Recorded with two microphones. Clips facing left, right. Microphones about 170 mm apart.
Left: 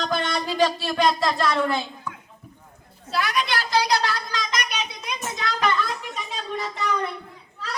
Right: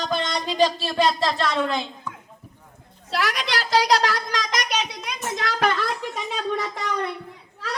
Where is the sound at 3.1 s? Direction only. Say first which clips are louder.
Left 1 dB; 85° right.